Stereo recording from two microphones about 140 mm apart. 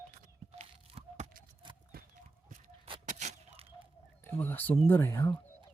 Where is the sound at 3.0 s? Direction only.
55° right (ahead or behind).